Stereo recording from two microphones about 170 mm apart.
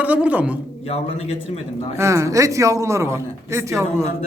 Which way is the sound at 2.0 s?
15° right (ahead or behind).